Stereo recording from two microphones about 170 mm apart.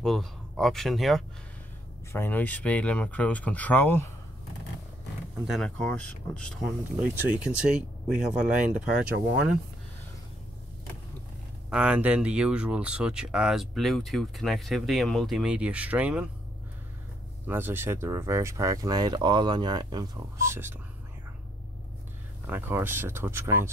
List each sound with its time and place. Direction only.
0.0 s speech: centre (ahead or behind)
2.1 s speech: 10° left (ahead or behind)
5.5 s speech: 5° left (ahead or behind)
7.0 s speech: 10° right (ahead or behind)
11.7 s speech: 5° right (ahead or behind)
17.5 s speech: 10° right (ahead or behind)
22.5 s speech: 15° right (ahead or behind)